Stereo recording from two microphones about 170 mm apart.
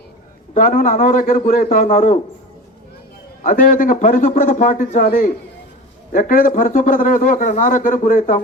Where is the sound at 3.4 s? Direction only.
50° left (ahead or behind).